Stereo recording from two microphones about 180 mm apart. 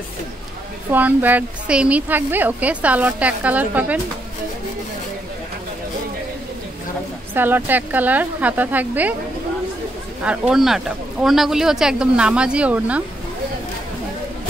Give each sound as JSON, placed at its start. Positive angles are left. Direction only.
{"t": 0.8, "sound": "a woman's voice", "side_deg": -10}
{"t": 7.3, "sound": "a woman's voice", "side_deg": -10}
{"t": 10.2, "sound": "speech", "side_deg": -5}